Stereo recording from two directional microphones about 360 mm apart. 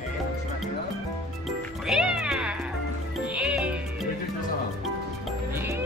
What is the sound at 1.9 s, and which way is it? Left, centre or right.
Music, centre.